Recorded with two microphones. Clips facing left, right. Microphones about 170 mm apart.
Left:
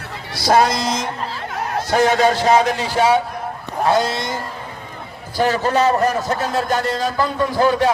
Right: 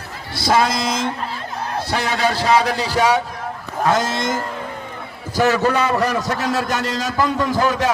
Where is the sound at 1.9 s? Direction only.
40° left (ahead or behind).